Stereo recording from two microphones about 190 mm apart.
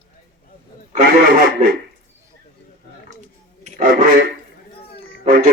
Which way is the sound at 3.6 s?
45° right (ahead or behind).